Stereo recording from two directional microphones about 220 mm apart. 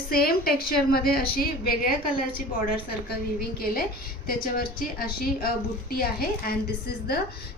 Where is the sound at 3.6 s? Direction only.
40° left (ahead or behind).